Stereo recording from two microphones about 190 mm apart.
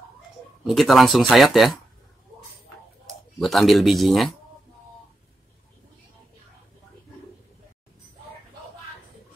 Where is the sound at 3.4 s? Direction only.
Centre (ahead or behind).